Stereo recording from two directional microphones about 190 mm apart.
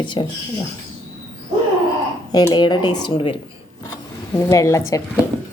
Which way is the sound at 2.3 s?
25° left (ahead or behind).